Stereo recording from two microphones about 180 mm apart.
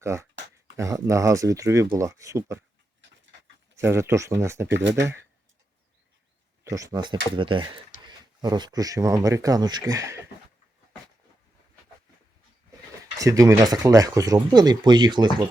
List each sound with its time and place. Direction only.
0.0 s speech: 15° right (ahead or behind)
3.8 s speech: 15° right (ahead or behind)
6.7 s speech: 20° right (ahead or behind)
13.1 s speech: 20° right (ahead or behind)